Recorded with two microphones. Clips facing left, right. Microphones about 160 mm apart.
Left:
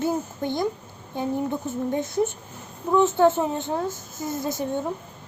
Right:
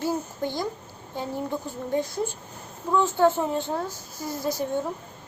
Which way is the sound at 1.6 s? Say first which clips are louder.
Left 2 dB; 20° left (ahead or behind).